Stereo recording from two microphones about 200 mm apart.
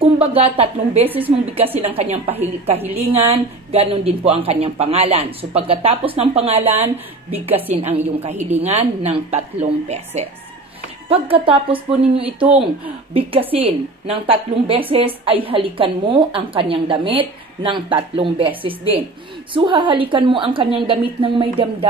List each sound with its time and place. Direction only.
0.0 s a woman's voice: 30° right (ahead or behind)
1.0 s a woman's voice: 10° right (ahead or behind)
1.6 s a woman's voice: 30° right (ahead or behind)